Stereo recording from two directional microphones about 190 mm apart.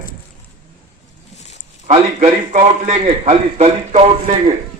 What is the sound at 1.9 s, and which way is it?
A man's voice, 35° right (ahead or behind).